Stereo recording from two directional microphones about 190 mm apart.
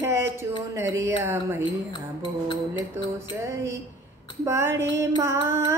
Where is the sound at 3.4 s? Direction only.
15° right (ahead or behind).